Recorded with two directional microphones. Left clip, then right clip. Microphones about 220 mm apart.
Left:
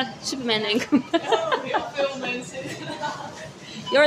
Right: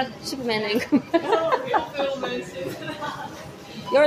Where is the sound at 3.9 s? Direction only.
10° left (ahead or behind).